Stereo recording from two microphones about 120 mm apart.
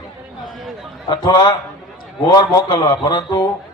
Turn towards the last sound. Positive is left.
turn(degrees=40)  # may be behind; listen again after turning